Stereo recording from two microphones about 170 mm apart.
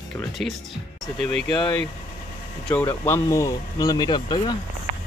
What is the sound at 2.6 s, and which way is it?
Speech, 10° left (ahead or behind).